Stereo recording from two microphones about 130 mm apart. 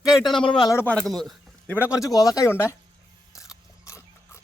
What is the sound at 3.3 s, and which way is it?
Ratchet, 25° left (ahead or behind).